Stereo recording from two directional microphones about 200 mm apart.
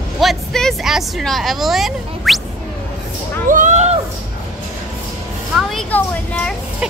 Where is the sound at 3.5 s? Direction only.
35° right (ahead or behind).